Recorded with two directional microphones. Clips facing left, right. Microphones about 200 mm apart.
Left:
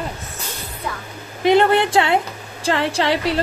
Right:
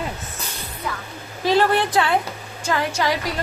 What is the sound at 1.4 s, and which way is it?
A woman's voice, 20° left (ahead or behind).